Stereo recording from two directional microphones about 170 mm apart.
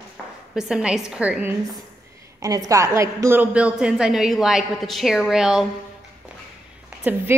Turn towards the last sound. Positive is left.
turn(degrees=-10)  # may be behind; listen again after turning